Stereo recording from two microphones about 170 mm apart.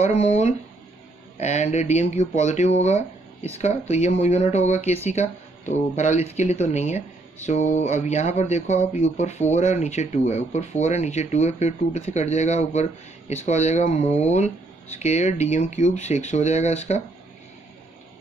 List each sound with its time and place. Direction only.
0.0 s speech: 40° left (ahead or behind)